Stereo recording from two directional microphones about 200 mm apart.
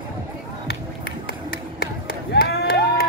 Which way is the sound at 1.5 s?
50° left (ahead or behind).